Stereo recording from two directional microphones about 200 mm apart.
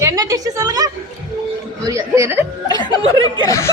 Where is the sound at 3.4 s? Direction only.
15° left (ahead or behind).